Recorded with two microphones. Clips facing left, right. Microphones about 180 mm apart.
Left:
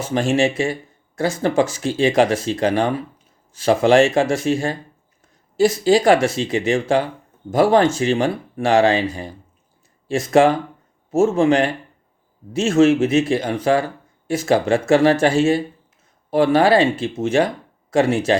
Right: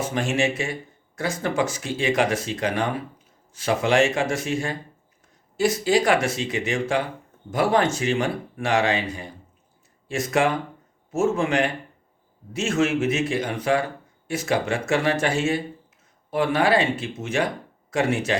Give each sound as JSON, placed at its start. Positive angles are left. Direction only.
{"t": 0.0, "sound": "speech", "side_deg": 30}